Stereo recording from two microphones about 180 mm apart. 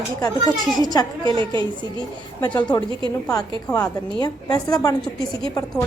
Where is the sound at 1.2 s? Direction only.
25° right (ahead or behind).